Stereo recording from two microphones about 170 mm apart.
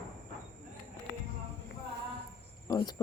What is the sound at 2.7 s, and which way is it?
Cricket, 20° left (ahead or behind).